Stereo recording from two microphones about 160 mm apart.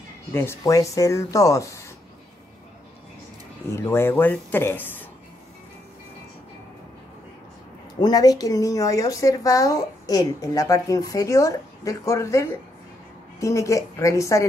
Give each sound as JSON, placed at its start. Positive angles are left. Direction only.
{"t": 0.3, "sound": "speech", "side_deg": 15}
{"t": 3.7, "sound": "speech", "side_deg": 15}
{"t": 8.0, "sound": "speech", "side_deg": 25}